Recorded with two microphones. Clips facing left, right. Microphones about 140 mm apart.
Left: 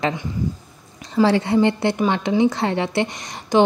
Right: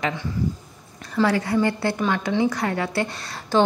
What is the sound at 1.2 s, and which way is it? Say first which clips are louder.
A woman's voice: left 4 dB; 25° left (ahead or behind).